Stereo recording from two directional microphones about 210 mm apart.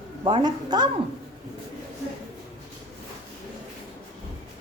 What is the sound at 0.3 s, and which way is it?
Speech, 20° right (ahead or behind).